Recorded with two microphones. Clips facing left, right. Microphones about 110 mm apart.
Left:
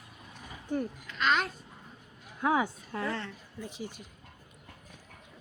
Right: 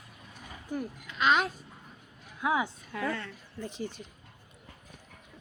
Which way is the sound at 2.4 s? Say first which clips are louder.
Left 1 dB; 45° left (ahead or behind).